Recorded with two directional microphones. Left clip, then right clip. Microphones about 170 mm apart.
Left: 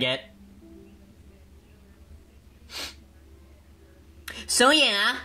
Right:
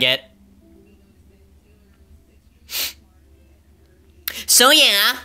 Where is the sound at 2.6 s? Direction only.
15° right (ahead or behind).